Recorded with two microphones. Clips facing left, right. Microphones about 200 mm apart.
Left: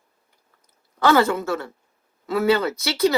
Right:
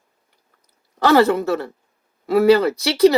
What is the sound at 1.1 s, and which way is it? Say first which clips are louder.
Speech: right 4 dB; 35° right (ahead or behind).